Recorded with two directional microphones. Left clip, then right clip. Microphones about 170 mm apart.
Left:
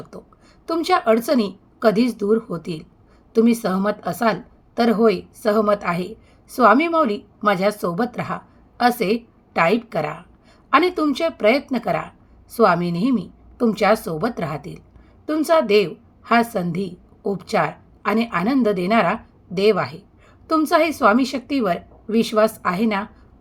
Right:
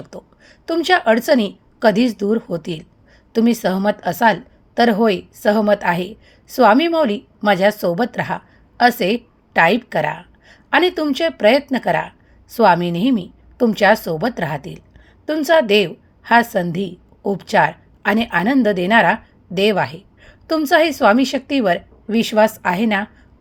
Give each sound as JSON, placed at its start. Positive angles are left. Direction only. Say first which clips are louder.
{"t": 0.1, "sound": "a woman's voice", "louder": "right 4 dB", "side_deg": -25}